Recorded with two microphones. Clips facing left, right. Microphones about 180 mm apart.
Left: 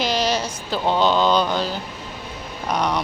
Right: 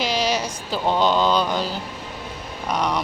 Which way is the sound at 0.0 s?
10° right (ahead or behind).